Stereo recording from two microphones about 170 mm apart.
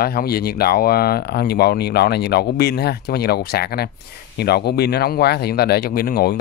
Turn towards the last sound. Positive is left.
turn(degrees=65)  # may be behind; listen again after turning